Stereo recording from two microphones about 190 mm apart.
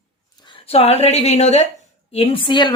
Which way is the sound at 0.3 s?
25° left (ahead or behind).